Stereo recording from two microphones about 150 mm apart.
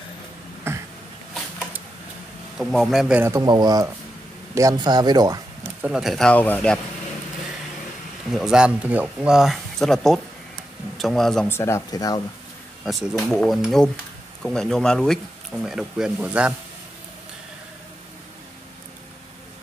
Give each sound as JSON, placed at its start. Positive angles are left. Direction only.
{"t": 0.7, "sound": "a sound", "side_deg": -15}
{"t": 2.6, "sound": "speech", "side_deg": 0}
{"t": 3.2, "sound": "speech", "side_deg": -20}
{"t": 3.4, "sound": "speech", "side_deg": -30}
{"t": 5.8, "sound": "speech", "side_deg": -5}
{"t": 8.3, "sound": "speech", "side_deg": -5}
{"t": 11.4, "sound": "speech", "side_deg": 15}
{"t": 12.8, "sound": "speech", "side_deg": -5}